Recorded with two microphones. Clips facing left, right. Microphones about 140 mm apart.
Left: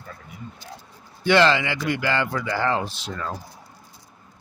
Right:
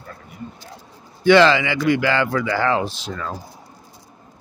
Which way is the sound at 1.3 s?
90° right.